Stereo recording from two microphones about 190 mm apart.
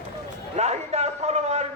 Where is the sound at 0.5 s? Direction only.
35° right (ahead or behind).